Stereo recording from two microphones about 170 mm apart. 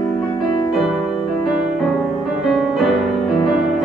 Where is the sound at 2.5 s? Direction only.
5° right (ahead or behind).